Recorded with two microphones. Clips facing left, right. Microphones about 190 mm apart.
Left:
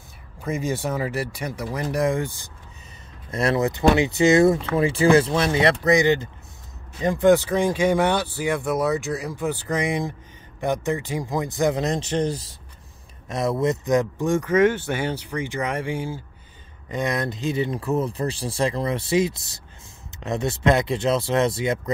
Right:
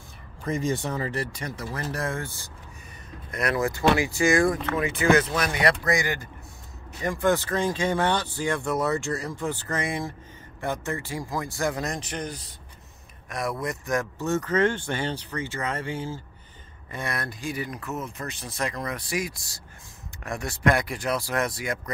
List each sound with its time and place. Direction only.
0.4 s speech: 5° left (ahead or behind); by 21.9 s 25° left (ahead or behind)